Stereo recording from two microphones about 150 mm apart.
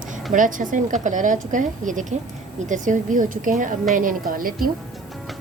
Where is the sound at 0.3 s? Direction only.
60° right (ahead or behind).